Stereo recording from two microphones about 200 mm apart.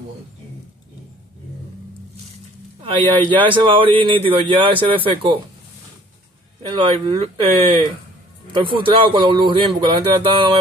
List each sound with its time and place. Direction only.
2.8 s speech: 25° right (ahead or behind)
6.7 s speech: 25° right (ahead or behind)